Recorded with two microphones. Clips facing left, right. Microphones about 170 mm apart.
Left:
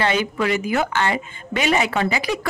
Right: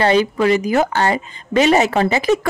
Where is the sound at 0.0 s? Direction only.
35° right (ahead or behind).